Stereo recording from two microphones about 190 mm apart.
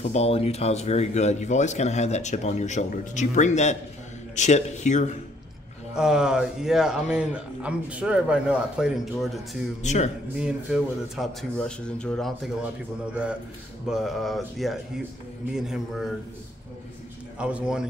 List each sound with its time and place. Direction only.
0.0 s speech: 35° left (ahead or behind)
5.9 s speech: 5° right (ahead or behind)
9.8 s speech: 35° left (ahead or behind)
10.4 s speech: centre (ahead or behind)
17.4 s speech: 5° right (ahead or behind)